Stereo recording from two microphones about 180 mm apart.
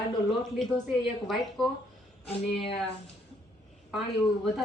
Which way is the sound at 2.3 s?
30° left (ahead or behind).